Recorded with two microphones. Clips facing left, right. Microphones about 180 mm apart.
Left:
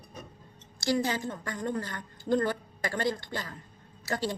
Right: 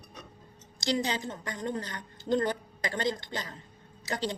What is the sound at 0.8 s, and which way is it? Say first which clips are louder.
A woman's voice: left 2 dB; 20° right (ahead or behind).